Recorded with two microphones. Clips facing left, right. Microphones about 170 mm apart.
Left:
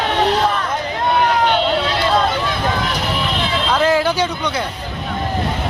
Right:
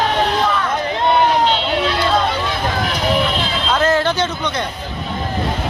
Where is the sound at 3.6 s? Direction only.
10° left (ahead or behind).